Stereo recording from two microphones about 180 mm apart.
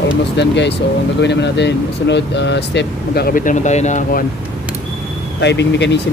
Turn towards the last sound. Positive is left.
turn(degrees=75)  # may be behind; listen again after turning